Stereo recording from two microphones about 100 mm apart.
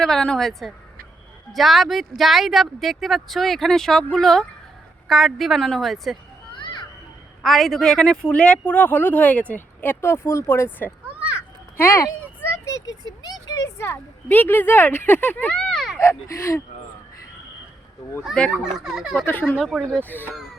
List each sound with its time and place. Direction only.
0.0 s speech: 5° left (ahead or behind)
6.5 s children playing: 55° left (ahead or behind)
7.4 s speech: centre (ahead or behind); by 10.9 s 20° left (ahead or behind)
11.0 s children playing: 15° right (ahead or behind)
11.8 s speech: 30° left (ahead or behind); by 15.8 s 10° left (ahead or behind)
16.0 s speech: 25° left (ahead or behind)
18.5 s speech: 5° right (ahead or behind)
19.1 s speech: 20° left (ahead or behind)
19.5 s speech: centre (ahead or behind)